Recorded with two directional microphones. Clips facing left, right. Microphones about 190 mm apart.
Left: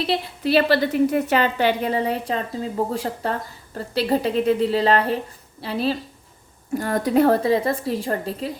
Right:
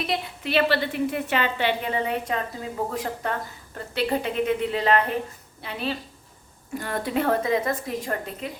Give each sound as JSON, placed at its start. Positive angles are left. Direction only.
{"t": 0.0, "sound": "a woman's voice", "side_deg": 35}